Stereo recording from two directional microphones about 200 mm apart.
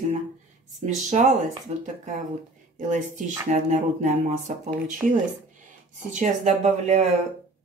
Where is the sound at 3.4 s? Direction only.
35° right (ahead or behind).